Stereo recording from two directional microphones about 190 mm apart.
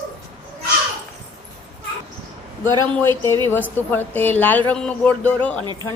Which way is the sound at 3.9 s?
10° left (ahead or behind).